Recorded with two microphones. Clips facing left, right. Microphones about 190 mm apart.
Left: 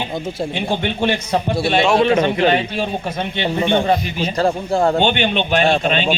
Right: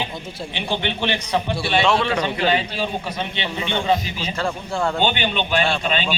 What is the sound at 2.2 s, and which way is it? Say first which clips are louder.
A man's voice: left 5 dB; 50° left (ahead or behind).